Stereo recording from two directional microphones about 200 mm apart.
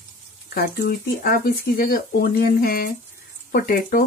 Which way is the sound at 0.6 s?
50° left (ahead or behind).